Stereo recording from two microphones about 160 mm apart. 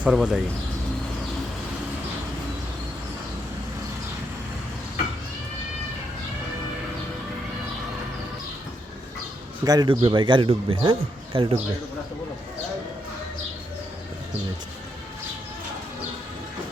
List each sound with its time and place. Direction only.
0.0 s speech: 5° right (ahead or behind)
9.6 s speech: 25° right (ahead or behind)